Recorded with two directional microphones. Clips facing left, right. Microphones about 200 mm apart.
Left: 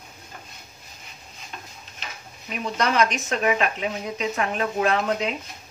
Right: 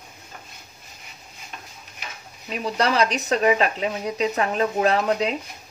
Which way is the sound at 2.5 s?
35° right (ahead or behind).